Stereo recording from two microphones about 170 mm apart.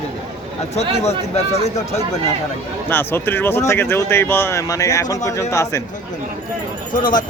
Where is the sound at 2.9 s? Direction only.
15° left (ahead or behind).